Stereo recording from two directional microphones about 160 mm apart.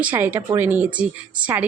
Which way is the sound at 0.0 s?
10° right (ahead or behind).